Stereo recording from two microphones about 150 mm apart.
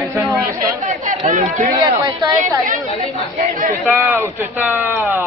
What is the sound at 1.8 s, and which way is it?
Speech, 30° right (ahead or behind).